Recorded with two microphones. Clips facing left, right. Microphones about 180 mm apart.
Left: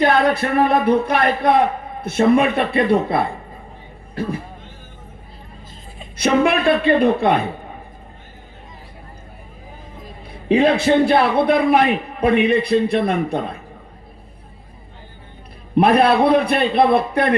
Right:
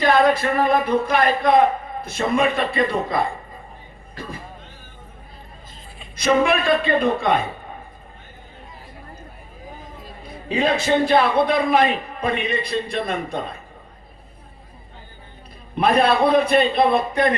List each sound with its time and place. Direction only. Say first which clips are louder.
0.0 s speech: left 1 dB; 60° left (ahead or behind)
6.1 s speech: left 2 dB; 65° left (ahead or behind)
10.2 s speech: left 6 dB; 60° left (ahead or behind)
15.7 s speech: left 4 dB; 60° left (ahead or behind)